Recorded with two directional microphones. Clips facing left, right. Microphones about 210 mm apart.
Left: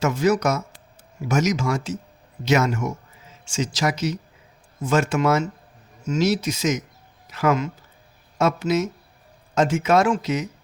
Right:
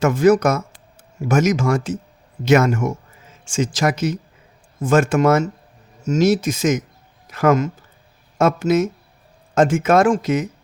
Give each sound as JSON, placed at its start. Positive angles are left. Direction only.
{"t": 0.0, "sound": "speech", "side_deg": -50}